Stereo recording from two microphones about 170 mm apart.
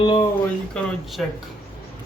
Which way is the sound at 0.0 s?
30° left (ahead or behind).